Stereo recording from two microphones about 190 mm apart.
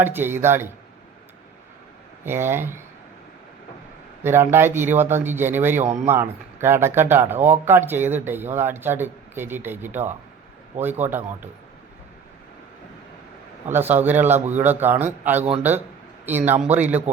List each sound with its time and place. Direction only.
0.0 s speech: 10° right (ahead or behind)
2.2 s speech: 10° right (ahead or behind)
4.2 s speech: 10° right (ahead or behind)
13.7 s speech: 10° right (ahead or behind)
15.4 s speech: 30° right (ahead or behind)
16.2 s speech: 10° right (ahead or behind)